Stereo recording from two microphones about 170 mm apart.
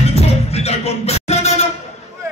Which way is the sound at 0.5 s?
40° left (ahead or behind).